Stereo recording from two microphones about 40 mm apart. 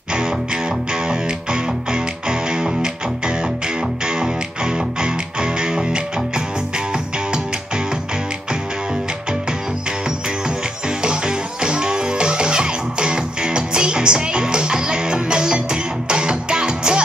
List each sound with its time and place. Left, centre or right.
0.9 s music: right
11.0 s music: right